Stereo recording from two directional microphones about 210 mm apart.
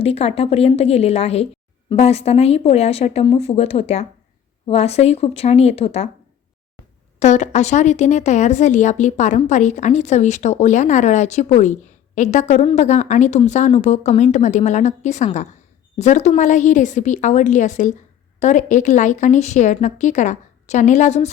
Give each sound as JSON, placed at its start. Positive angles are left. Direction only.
{"t": 0.0, "sound": "speech", "side_deg": 30}
{"t": 7.2, "sound": "speech", "side_deg": 35}